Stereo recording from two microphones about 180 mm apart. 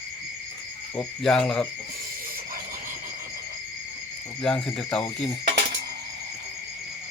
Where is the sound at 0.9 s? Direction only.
5° left (ahead or behind).